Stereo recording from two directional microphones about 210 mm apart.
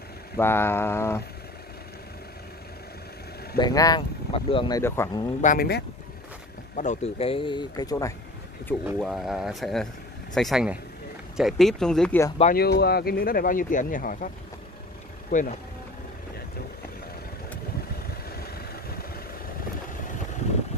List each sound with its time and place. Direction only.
0.4 s a sound: 10° left (ahead or behind)
3.5 s speech: 20° left (ahead or behind)
5.4 s speech: 40° left (ahead or behind)
6.7 s speech: 35° left (ahead or behind); by 8.1 s 20° left (ahead or behind)
8.6 s speech: centre (ahead or behind)
12.5 s speech: 50° left (ahead or behind)
15.3 s speech: 40° left (ahead or behind)